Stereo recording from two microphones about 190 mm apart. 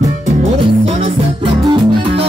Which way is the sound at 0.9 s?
30° right (ahead or behind).